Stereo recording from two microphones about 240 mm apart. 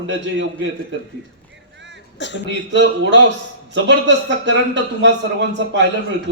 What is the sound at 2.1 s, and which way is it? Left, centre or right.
Speech, left.